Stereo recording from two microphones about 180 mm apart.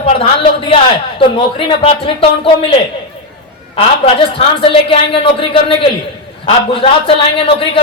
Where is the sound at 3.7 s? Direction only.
30° left (ahead or behind).